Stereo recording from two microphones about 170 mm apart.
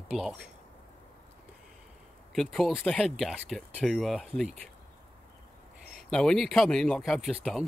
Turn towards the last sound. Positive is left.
turn(degrees=0)  # may be behind; listen again after turning